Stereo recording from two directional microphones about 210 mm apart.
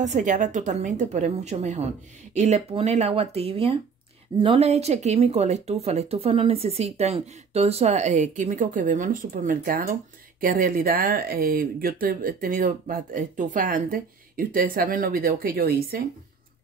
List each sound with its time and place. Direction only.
0.0 s speech: 35° right (ahead or behind)